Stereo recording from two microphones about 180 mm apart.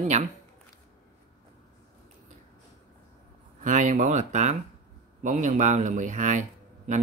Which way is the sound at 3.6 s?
45° right (ahead or behind).